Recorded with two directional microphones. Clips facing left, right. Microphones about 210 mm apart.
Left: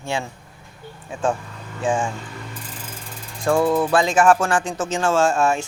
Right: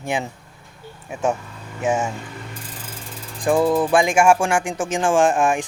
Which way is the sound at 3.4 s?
15° right (ahead or behind).